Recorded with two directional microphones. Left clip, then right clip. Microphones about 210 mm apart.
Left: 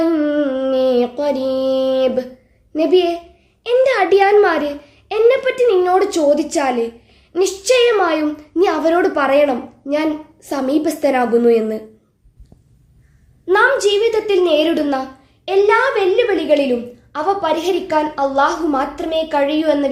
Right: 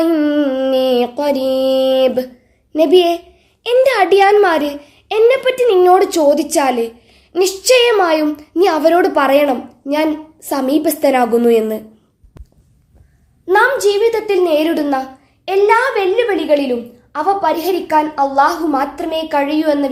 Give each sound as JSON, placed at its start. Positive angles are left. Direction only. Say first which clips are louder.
{"t": 0.0, "sound": "music", "louder": "right 2 dB", "side_deg": -30}
{"t": 2.7, "sound": "a child's voice", "louder": "right 4 dB", "side_deg": -35}
{"t": 13.5, "sound": "a woman's voice", "louder": "right 1 dB", "side_deg": -15}